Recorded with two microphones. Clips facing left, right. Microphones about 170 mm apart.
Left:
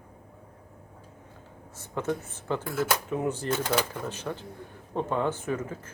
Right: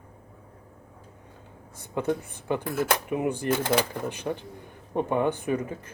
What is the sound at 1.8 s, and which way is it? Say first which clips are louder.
Speech: right 3 dB; 15° right (ahead or behind).